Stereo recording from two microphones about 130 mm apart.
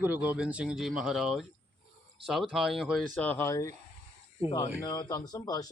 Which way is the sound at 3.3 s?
20° left (ahead or behind).